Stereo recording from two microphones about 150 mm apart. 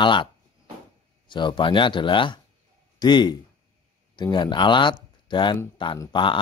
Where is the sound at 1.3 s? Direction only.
30° left (ahead or behind).